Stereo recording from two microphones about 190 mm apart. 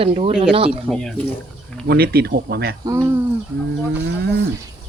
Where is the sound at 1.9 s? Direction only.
55° right (ahead or behind).